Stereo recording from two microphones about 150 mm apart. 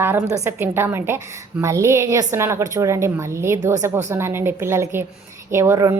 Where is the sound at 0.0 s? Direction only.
15° right (ahead or behind).